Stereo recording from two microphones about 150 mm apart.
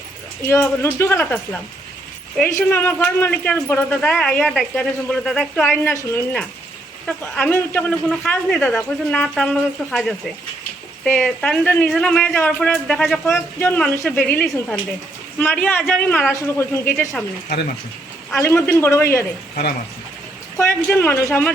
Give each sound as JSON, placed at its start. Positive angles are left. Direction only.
{"t": 0.8, "sound": "speech", "side_deg": 15}
{"t": 5.6, "sound": "speech", "side_deg": 15}
{"t": 7.3, "sound": "speech", "side_deg": 10}
{"t": 18.3, "sound": "speech", "side_deg": 15}
{"t": 20.6, "sound": "speech", "side_deg": 15}